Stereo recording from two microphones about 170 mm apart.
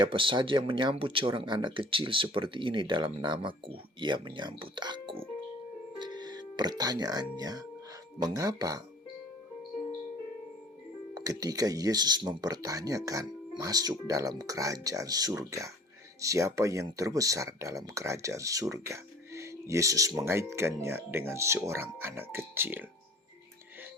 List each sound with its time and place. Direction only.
0.0 s speech: 30° right (ahead or behind)
6.0 s music: 25° right (ahead or behind)
6.6 s speech: 25° right (ahead or behind)
11.1 s speech: 20° right (ahead or behind)